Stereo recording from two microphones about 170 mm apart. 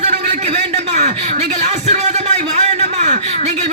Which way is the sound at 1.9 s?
40° right (ahead or behind).